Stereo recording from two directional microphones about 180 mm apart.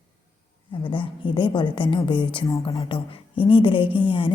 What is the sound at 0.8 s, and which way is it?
A woman's voice, 25° left (ahead or behind).